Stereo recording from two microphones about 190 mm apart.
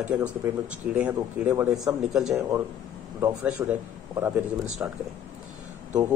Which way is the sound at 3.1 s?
15° right (ahead or behind).